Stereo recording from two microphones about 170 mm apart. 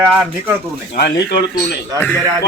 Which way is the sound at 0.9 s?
70° left (ahead or behind).